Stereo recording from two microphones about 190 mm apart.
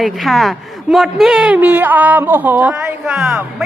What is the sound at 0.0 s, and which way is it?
A man's voice, centre (ahead or behind).